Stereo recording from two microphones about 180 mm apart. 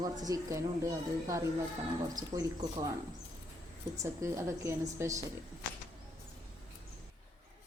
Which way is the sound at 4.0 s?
15° right (ahead or behind).